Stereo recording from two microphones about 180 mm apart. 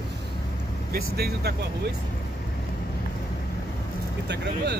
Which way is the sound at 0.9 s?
60° right (ahead or behind).